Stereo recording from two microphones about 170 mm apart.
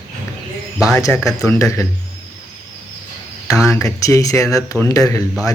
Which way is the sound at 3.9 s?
20° left (ahead or behind).